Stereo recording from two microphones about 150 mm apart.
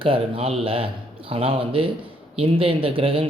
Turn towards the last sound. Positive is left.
turn(degrees=-35)  # may be behind; listen again after turning